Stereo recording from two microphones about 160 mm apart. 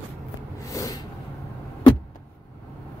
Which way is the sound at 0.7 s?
20° left (ahead or behind).